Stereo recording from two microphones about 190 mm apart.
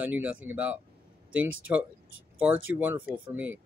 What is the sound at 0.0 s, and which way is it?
Speech, 10° right (ahead or behind).